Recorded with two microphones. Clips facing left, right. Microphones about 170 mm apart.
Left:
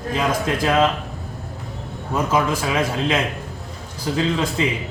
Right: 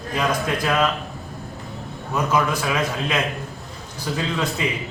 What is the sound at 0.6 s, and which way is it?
Speech, 25° left (ahead or behind).